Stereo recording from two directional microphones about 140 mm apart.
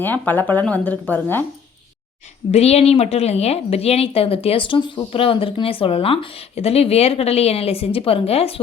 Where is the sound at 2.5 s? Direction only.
45° left (ahead or behind).